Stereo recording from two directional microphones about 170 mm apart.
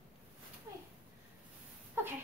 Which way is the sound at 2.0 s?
15° right (ahead or behind).